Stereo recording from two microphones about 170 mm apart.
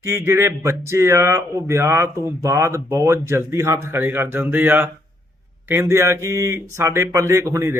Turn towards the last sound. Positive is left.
turn(degrees=-15)  # may be behind; listen again after turning